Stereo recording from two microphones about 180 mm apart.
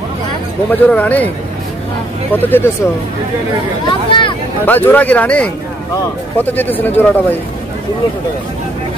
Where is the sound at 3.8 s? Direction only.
30° left (ahead or behind).